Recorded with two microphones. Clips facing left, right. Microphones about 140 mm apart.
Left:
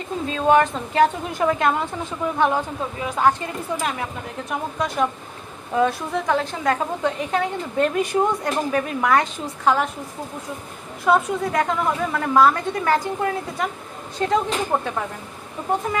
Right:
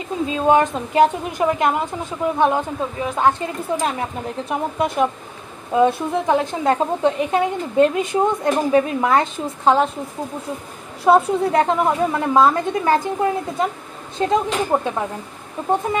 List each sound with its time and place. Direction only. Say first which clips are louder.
0.3 s a woman's voice: right 1 dB; 20° right (ahead or behind)
11.1 s a woman's voice: right 5 dB; 30° right (ahead or behind)